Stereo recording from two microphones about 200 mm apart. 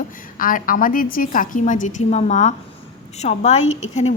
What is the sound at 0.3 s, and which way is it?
A woman's voice, 45° left (ahead or behind).